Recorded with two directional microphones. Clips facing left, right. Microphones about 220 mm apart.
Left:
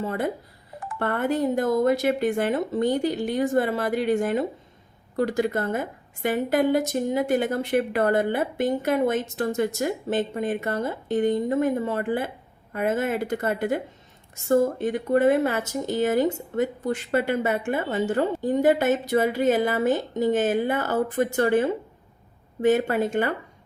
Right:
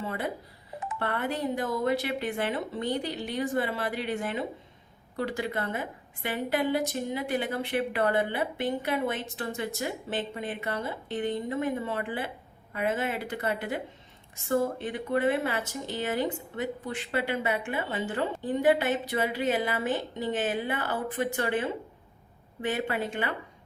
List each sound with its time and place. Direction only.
0.0 s speech: 45° left (ahead or behind)